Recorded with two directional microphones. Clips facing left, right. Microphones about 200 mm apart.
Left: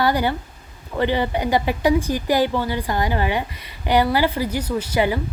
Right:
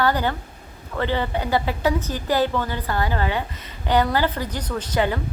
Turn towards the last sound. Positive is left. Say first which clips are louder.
# left 2 dB
turn(degrees=10)  # may be behind; listen again after turning